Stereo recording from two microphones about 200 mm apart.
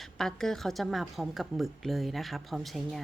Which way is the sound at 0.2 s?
5° left (ahead or behind).